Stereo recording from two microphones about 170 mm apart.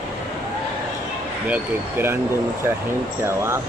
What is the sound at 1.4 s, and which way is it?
Speech, 10° right (ahead or behind).